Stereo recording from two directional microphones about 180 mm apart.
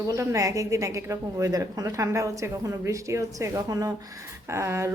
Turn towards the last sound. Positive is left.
turn(degrees=-15)  # may be behind; listen again after turning